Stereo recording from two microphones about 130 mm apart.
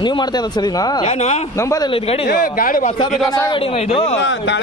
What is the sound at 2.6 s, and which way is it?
Speech, 90° left.